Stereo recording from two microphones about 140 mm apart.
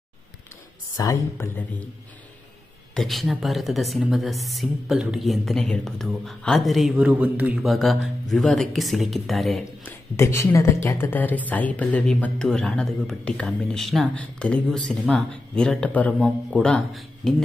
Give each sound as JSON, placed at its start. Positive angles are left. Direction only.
{"t": 0.9, "sound": "speech", "side_deg": 25}
{"t": 2.9, "sound": "a woman's voice", "side_deg": 0}
{"t": 7.6, "sound": "a woman's voice", "side_deg": 0}
{"t": 9.8, "sound": "speech", "side_deg": 20}